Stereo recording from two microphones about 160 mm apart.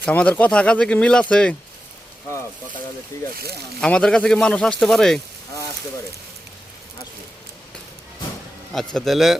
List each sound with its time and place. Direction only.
0.0 s speech: 10° left (ahead or behind)
3.1 s speech: 20° left (ahead or behind)
3.8 s speech: 5° left (ahead or behind)
8.7 s speech: 5° left (ahead or behind)